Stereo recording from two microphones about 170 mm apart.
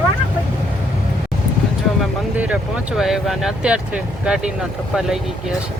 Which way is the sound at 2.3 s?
5° right (ahead or behind).